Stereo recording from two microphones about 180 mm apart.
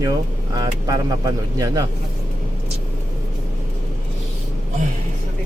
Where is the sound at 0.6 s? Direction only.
20° right (ahead or behind).